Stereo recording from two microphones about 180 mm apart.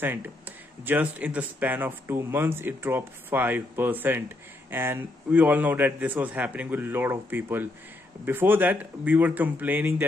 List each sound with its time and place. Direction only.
0.0 s speech: 10° right (ahead or behind)